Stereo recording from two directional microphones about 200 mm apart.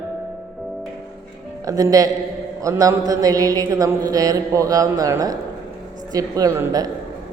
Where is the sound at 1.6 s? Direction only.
15° right (ahead or behind).